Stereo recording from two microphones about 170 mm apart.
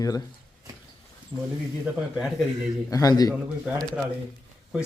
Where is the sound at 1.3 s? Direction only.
20° right (ahead or behind).